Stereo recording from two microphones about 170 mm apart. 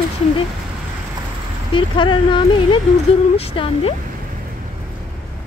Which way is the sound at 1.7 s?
30° left (ahead or behind).